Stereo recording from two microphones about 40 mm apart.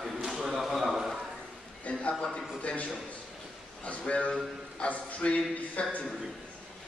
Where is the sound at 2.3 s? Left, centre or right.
Left.